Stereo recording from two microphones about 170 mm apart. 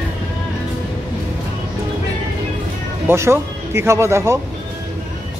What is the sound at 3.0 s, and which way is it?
Speech, 15° right (ahead or behind).